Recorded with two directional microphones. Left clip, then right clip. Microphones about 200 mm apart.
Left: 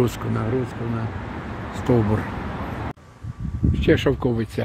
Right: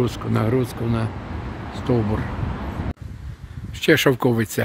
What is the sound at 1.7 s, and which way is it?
Speech, 5° left (ahead or behind).